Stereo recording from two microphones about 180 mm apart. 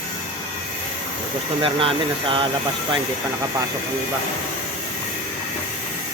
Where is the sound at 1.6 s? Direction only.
30° right (ahead or behind).